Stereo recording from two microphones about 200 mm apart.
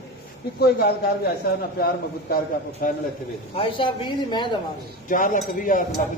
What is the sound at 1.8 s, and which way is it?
Speech, 50° left (ahead or behind).